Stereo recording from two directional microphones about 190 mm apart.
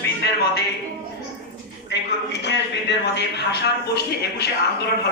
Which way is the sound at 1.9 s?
65° left (ahead or behind).